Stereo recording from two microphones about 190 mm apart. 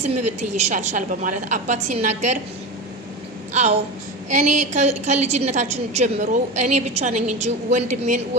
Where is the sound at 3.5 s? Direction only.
35° right (ahead or behind).